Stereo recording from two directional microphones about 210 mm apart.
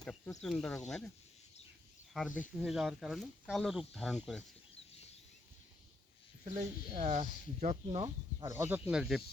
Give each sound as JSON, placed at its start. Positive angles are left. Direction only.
{"t": 0.4, "sound": "speech", "side_deg": 0}
{"t": 2.1, "sound": "speech", "side_deg": 0}
{"t": 6.4, "sound": "speech", "side_deg": -40}
{"t": 8.4, "sound": "speech", "side_deg": -10}